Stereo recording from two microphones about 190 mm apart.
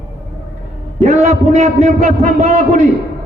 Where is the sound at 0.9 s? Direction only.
35° right (ahead or behind).